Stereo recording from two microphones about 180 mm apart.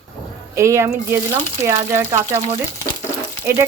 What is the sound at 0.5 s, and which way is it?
Speech, 15° right (ahead or behind).